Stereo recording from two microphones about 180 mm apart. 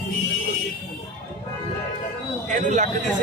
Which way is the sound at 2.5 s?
45° right (ahead or behind).